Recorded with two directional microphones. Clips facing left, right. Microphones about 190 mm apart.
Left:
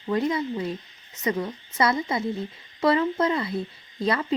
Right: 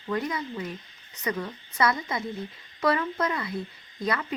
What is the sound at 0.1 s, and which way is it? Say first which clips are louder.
A woman's voice: left 5 dB; 25° left (ahead or behind).